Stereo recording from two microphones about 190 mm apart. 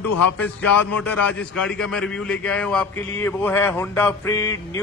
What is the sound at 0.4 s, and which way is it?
A man's voice, 10° left (ahead or behind).